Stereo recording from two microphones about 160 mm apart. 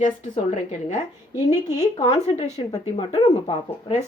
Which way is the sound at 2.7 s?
25° left (ahead or behind).